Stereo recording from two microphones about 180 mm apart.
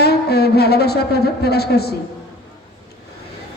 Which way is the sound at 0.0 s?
60° left (ahead or behind).